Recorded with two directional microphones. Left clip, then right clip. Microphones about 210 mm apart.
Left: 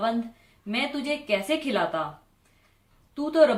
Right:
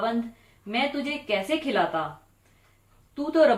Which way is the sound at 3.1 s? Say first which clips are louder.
Left 1 dB; 35° left (ahead or behind).